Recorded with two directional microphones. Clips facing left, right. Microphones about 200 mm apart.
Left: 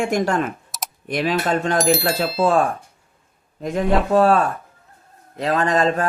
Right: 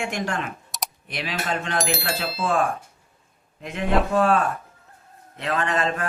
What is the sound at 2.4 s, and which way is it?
Speech, 40° left (ahead or behind).